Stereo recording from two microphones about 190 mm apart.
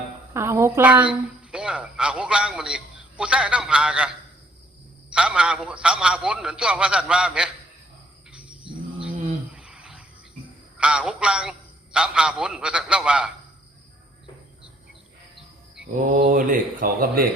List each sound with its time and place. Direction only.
0.3 s a woman's voice: 15° right (ahead or behind)
5.1 s a man's voice: 5° right (ahead or behind)
8.7 s dog: 5° right (ahead or behind)
10.8 s a man's voice: 5° right (ahead or behind)
16.0 s speech: 45° right (ahead or behind)